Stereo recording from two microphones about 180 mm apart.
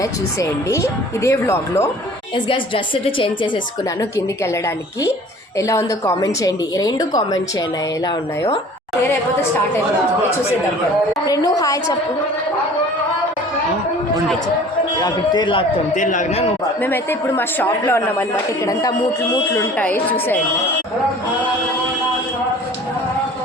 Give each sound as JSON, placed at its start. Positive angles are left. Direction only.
{"t": 0.0, "sound": "speech", "side_deg": 15}
{"t": 2.3, "sound": "a woman's voice", "side_deg": 30}
{"t": 5.5, "sound": "a woman's voice", "side_deg": 15}
{"t": 11.3, "sound": "a woman's voice", "side_deg": 20}
{"t": 15.0, "sound": "a woman's voice", "side_deg": 25}
{"t": 16.0, "sound": "speech", "side_deg": 45}
{"t": 16.8, "sound": "speech", "side_deg": 10}